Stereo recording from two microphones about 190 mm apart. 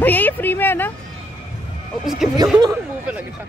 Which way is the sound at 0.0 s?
10° left (ahead or behind).